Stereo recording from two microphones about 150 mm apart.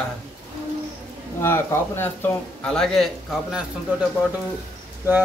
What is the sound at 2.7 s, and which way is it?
Speech, 5° left (ahead or behind).